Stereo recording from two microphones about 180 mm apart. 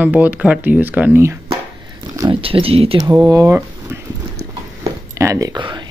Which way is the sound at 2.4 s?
30° right (ahead or behind).